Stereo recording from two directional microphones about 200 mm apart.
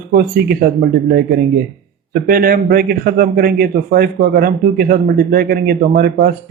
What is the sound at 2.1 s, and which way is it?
Speech, 50° right (ahead or behind).